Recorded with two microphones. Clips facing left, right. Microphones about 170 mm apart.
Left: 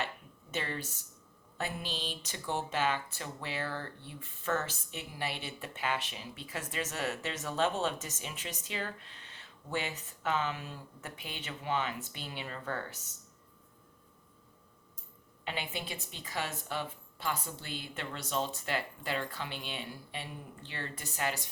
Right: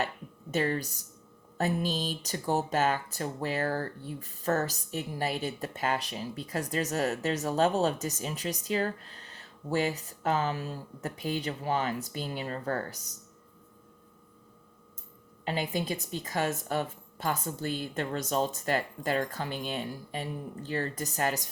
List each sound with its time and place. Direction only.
0.5 s speech: 40° right (ahead or behind)
15.4 s speech: 40° right (ahead or behind)